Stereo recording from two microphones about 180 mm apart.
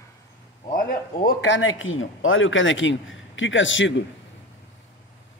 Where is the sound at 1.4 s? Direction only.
90° left.